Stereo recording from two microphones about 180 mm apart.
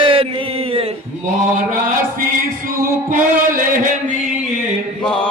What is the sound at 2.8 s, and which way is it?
Chant, 50° right (ahead or behind).